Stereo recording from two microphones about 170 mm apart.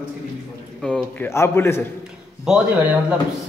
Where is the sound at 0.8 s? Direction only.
10° left (ahead or behind).